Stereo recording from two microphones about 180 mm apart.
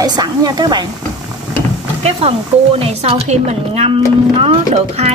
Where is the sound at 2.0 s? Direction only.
30° right (ahead or behind).